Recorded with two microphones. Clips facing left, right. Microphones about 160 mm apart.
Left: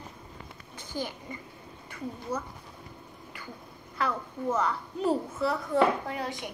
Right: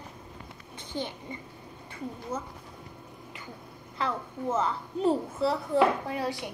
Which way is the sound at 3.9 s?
25° right (ahead or behind).